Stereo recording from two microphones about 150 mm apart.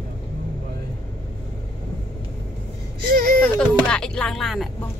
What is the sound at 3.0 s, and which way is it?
Whimper, 85° right.